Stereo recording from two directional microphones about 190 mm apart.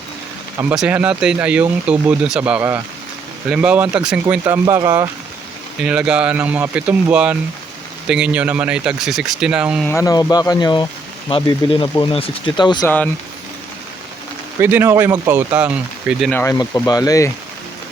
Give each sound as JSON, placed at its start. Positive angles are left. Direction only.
{"t": 0.6, "sound": "speech", "side_deg": -5}
{"t": 9.8, "sound": "speech", "side_deg": 15}
{"t": 14.6, "sound": "speech", "side_deg": -10}
{"t": 16.3, "sound": "speech", "side_deg": 15}